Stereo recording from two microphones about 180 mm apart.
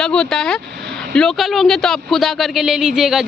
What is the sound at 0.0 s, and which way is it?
Speech, 5° left (ahead or behind).